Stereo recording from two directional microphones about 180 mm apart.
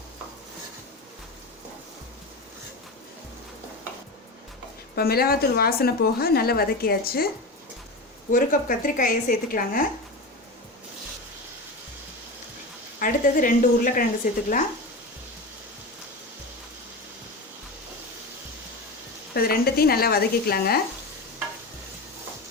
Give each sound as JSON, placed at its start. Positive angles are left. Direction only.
{"t": 4.9, "sound": "a woman's voice", "side_deg": 60}
{"t": 8.3, "sound": "a woman's voice", "side_deg": 50}
{"t": 13.0, "sound": "a woman's voice", "side_deg": 50}
{"t": 19.3, "sound": "a woman's voice", "side_deg": 60}